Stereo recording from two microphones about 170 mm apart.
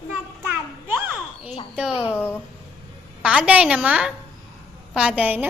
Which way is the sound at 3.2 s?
5° right (ahead or behind).